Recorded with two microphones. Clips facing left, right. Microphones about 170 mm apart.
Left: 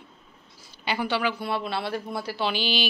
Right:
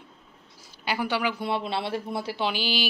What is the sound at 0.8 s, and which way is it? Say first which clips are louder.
Speech: left 1 dB; 10° right (ahead or behind).